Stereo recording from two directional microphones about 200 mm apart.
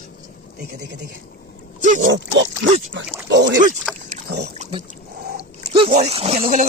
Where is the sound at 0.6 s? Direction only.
55° right (ahead or behind).